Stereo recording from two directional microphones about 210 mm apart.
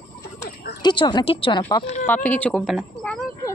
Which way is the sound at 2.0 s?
10° left (ahead or behind).